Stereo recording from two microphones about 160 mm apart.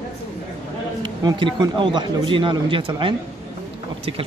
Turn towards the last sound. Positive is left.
turn(degrees=-30)  # may be behind; listen again after turning